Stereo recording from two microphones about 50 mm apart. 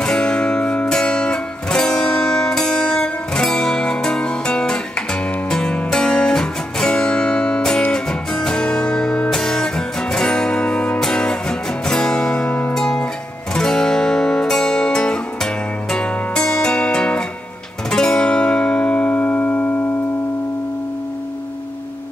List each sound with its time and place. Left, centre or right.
0.0 s music: centre
12.7 s music: centre; by 19.7 s left